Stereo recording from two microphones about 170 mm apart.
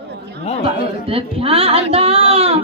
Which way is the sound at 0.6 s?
35° right (ahead or behind).